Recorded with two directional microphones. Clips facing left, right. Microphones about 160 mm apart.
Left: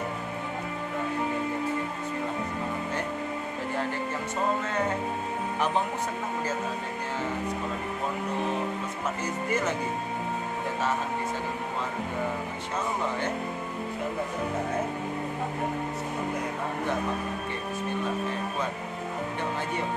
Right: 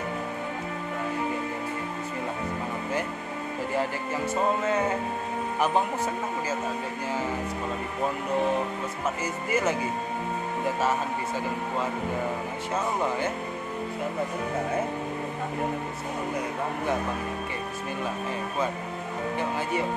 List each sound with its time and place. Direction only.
9.2 s speech: 5° right (ahead or behind)